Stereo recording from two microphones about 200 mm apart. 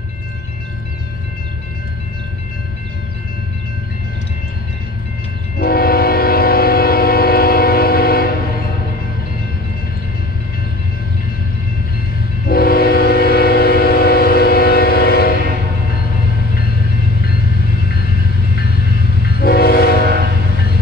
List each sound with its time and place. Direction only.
5.6 s train: 50° left (ahead or behind)
12.4 s train: 50° left (ahead or behind)
19.2 s train: 50° left (ahead or behind)